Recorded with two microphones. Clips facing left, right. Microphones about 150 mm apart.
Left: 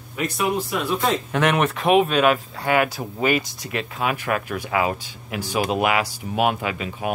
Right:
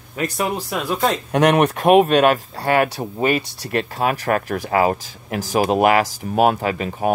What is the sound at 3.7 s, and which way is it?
Speech, 40° right (ahead or behind).